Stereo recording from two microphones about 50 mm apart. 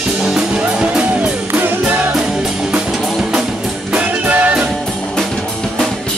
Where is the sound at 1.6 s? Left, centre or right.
Right.